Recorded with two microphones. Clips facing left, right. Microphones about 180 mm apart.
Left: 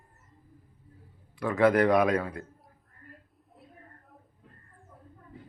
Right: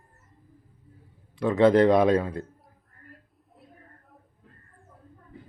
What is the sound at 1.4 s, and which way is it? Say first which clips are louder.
Speech: right 4 dB; 20° right (ahead or behind).